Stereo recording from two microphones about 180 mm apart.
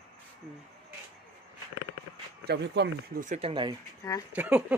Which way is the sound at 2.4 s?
65° right (ahead or behind).